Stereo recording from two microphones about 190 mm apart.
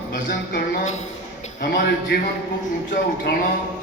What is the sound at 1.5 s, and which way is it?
A man's voice, 60° left (ahead or behind).